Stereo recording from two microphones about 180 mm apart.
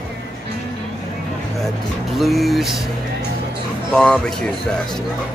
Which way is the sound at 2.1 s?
Centre (ahead or behind).